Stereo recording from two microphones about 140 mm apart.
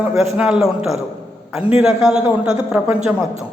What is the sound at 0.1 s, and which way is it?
A man's voice, centre (ahead or behind).